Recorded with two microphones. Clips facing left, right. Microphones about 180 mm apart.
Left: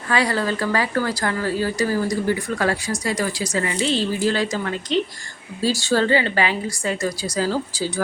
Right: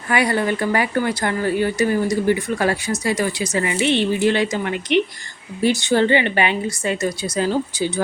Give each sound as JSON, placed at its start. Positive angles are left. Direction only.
{"t": 0.1, "sound": "speech", "side_deg": -20}